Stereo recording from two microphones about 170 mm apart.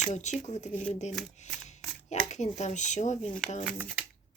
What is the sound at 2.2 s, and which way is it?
Speech, 40° left (ahead or behind).